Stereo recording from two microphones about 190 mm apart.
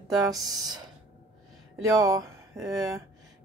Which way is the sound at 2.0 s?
15° right (ahead or behind).